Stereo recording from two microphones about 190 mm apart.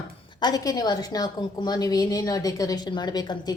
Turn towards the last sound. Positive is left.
turn(degrees=20)  # may be behind; listen again after turning